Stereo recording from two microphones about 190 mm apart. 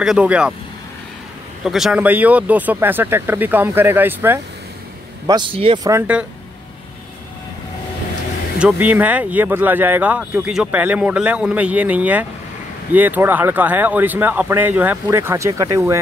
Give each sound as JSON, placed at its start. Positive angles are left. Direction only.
{"t": 0.0, "sound": "speech", "side_deg": -5}
{"t": 1.6, "sound": "speech", "side_deg": 0}
{"t": 5.2, "sound": "speech", "side_deg": -25}
{"t": 5.9, "sound": "speech", "side_deg": -10}
{"t": 8.5, "sound": "speech", "side_deg": -5}